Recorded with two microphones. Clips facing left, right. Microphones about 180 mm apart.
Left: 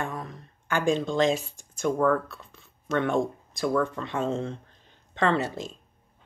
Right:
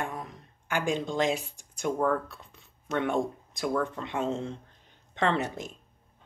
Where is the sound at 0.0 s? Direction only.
10° right (ahead or behind).